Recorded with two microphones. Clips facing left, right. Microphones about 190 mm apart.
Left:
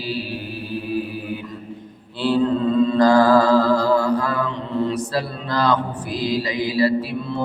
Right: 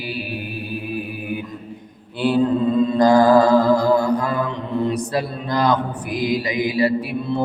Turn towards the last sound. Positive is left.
turn(degrees=-15)  # may be behind; listen again after turning